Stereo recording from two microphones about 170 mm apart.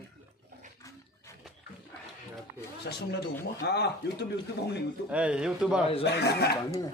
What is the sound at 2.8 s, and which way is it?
A man's voice, 70° left (ahead or behind).